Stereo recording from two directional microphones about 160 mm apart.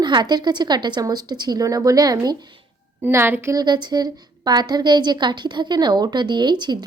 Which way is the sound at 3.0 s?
15° right (ahead or behind).